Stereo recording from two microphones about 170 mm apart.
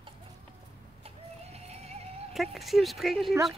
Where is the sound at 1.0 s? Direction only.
40° right (ahead or behind).